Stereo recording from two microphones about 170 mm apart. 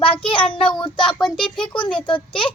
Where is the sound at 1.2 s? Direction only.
5° left (ahead or behind).